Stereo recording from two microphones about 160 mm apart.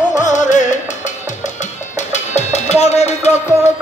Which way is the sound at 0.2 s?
50° left (ahead or behind).